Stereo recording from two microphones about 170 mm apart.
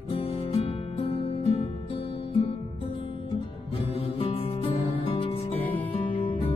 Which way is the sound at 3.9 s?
35° left (ahead or behind).